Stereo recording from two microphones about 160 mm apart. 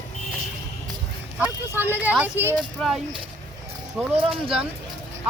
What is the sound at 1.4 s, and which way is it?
Speech, 10° right (ahead or behind).